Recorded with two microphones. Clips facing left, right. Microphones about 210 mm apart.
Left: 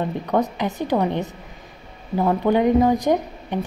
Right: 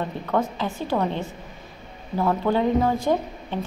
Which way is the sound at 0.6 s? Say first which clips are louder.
Left 3 dB; 20° left (ahead or behind).